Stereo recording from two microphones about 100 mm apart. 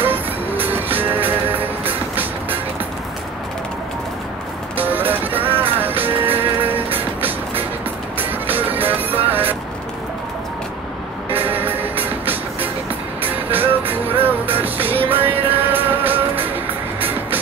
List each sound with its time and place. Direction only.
0.0 s music: 20° right (ahead or behind)
4.7 s music: 20° right (ahead or behind)
11.3 s music: 20° right (ahead or behind)